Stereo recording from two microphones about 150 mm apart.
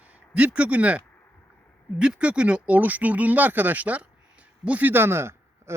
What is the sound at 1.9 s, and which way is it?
Speech, 5° right (ahead or behind).